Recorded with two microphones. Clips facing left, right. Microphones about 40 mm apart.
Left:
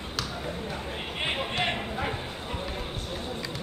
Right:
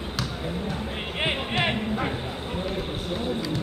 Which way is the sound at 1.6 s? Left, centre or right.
Centre.